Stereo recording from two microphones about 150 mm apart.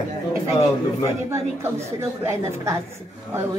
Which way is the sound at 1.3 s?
20° right (ahead or behind).